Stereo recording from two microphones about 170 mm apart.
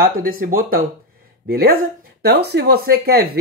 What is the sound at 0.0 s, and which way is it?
Speech, 60° right (ahead or behind).